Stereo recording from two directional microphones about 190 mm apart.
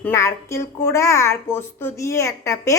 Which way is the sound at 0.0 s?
15° left (ahead or behind).